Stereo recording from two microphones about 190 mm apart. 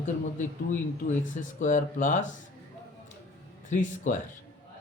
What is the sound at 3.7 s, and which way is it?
Speech, 40° left (ahead or behind).